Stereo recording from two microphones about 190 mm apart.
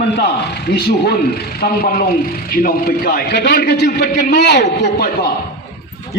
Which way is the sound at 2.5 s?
50° left (ahead or behind).